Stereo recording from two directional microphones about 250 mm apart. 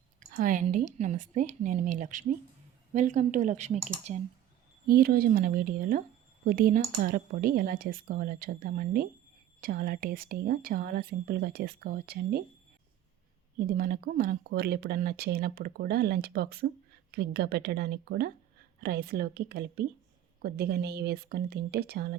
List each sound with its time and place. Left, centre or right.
0.2 s speech: right
4.9 s speech: right
13.7 s speech: right